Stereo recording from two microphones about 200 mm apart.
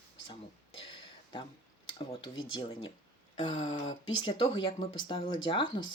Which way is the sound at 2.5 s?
25° left (ahead or behind).